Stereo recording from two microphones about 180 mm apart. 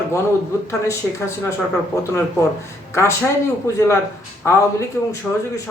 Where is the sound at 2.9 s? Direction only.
15° left (ahead or behind).